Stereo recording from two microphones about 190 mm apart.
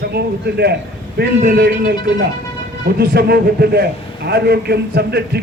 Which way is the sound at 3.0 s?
55° right (ahead or behind).